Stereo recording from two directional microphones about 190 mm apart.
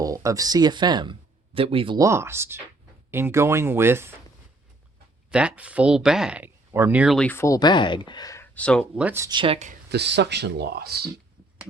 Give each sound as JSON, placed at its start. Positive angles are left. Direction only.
{"t": 0.0, "sound": "speech", "side_deg": -15}
{"t": 2.0, "sound": "speech", "side_deg": -15}
{"t": 5.3, "sound": "speech", "side_deg": -5}
{"t": 7.3, "sound": "speech", "side_deg": 15}
{"t": 9.0, "sound": "speech", "side_deg": -10}
{"t": 9.3, "sound": "speech", "side_deg": -25}
{"t": 9.9, "sound": "speech", "side_deg": -60}